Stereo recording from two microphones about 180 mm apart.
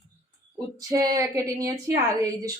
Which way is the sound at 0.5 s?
20° right (ahead or behind).